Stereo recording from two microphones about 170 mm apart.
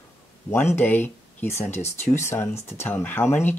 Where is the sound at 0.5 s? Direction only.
15° left (ahead or behind).